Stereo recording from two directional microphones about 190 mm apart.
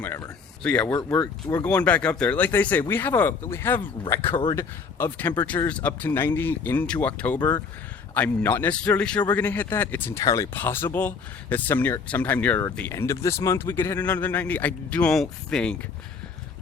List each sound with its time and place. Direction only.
0.0 s speech: 10° left (ahead or behind)
0.9 s speech: 15° left (ahead or behind)